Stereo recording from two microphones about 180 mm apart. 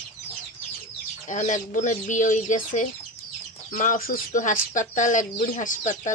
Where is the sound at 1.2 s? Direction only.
45° left (ahead or behind).